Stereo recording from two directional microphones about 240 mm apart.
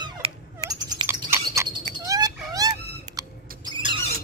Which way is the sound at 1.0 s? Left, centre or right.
Centre.